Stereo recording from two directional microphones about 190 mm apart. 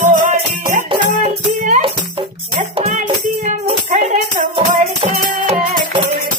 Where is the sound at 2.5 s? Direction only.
40° right (ahead or behind).